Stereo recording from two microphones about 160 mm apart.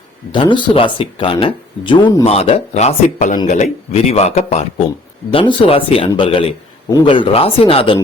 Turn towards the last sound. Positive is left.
turn(degrees=35)  # may be behind; listen again after turning